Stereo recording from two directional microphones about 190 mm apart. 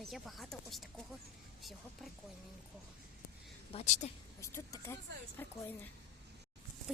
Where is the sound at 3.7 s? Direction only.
35° left (ahead or behind).